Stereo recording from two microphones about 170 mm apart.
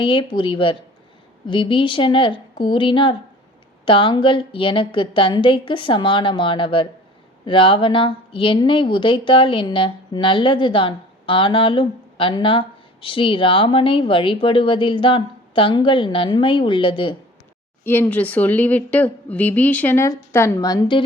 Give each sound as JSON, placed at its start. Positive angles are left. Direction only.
{"t": 0.0, "sound": "a woman's voice", "side_deg": 30}
{"t": 17.8, "sound": "a woman's voice", "side_deg": 10}